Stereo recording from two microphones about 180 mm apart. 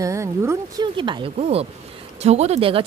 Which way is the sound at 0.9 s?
25° right (ahead or behind).